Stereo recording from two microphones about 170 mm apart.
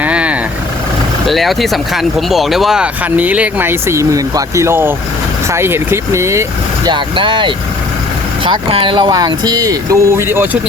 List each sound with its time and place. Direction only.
0.0 s vehicle: 5° right (ahead or behind)
1.3 s speech: centre (ahead or behind); by 6.4 s 15° right (ahead or behind)
6.8 s speech: 30° right (ahead or behind); by 10.6 s 15° right (ahead or behind)